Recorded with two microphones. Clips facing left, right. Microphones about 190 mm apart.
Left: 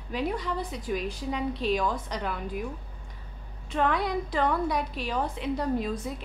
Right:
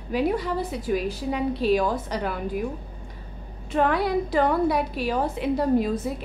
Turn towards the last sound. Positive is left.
turn(degrees=-5)  # may be behind; listen again after turning